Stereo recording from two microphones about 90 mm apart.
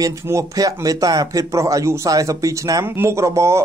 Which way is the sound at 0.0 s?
40° right (ahead or behind).